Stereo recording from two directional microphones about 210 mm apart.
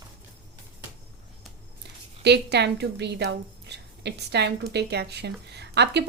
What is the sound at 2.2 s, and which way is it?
A woman's voice, 55° right (ahead or behind).